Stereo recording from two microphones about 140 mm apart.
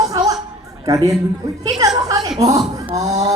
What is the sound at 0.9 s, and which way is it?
A woman's voice, 25° right (ahead or behind).